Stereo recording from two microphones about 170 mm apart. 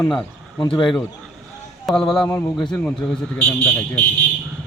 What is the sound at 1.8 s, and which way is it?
A man's voice, centre (ahead or behind).